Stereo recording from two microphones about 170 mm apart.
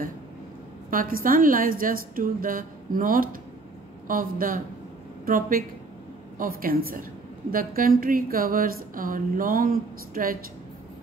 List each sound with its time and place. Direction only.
0.8 s a woman's voice: 55° right (ahead or behind)